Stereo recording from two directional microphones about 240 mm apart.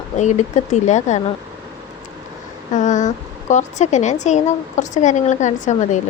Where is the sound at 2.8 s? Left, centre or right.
Left.